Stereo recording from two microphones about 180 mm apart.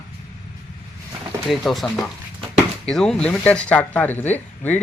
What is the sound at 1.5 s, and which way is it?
Speech, centre (ahead or behind).